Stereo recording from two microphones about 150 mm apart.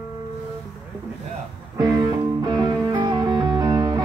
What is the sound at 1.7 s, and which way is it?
Music, 25° right (ahead or behind).